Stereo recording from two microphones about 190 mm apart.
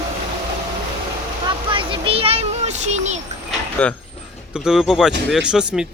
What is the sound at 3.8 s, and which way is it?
Speech, 5° left (ahead or behind).